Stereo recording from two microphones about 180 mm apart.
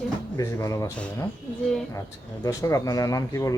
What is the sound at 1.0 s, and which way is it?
Speech, 5° left (ahead or behind).